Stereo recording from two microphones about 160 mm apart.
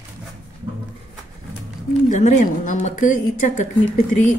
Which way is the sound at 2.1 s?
50° left (ahead or behind).